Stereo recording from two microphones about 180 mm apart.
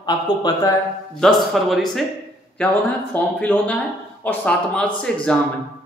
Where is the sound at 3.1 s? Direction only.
10° left (ahead or behind).